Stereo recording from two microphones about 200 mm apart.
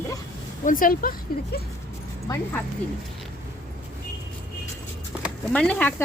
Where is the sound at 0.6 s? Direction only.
45° left (ahead or behind).